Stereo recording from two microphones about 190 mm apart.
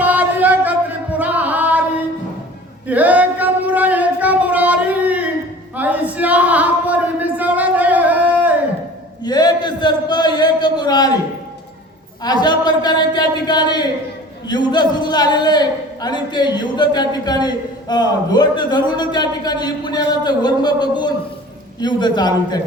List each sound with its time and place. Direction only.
0.0 s music: 10° right (ahead or behind)
2.8 s male singing: 10° right (ahead or behind)
5.7 s a sound: 10° right (ahead or behind)
9.2 s a man's voice: 20° left (ahead or behind)
12.2 s a man's voice: 20° left (ahead or behind)